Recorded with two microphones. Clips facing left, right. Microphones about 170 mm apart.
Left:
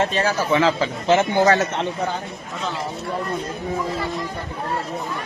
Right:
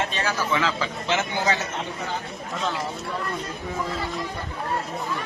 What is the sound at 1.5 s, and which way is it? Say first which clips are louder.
Speech: left 7 dB; 70° left (ahead or behind).